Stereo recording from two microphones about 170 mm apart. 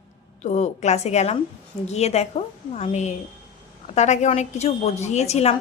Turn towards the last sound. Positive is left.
turn(degrees=40)  # may be behind; listen again after turning